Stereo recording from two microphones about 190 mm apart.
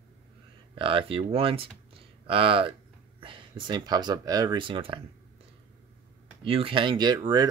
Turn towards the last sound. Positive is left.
turn(degrees=-20)  # may be behind; listen again after turning